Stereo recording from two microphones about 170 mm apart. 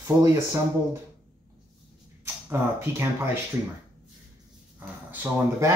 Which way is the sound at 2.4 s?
15° right (ahead or behind).